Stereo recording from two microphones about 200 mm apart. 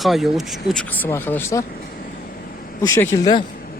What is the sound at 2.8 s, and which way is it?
Speech, 15° left (ahead or behind).